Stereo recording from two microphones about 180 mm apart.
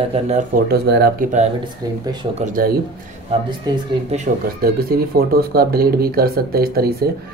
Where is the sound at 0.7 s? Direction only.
65° right (ahead or behind).